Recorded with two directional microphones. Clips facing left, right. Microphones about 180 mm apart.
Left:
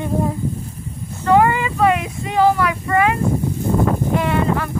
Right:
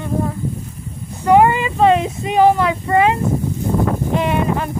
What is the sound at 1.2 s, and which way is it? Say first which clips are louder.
Female singing: right 2 dB; 20° right (ahead or behind).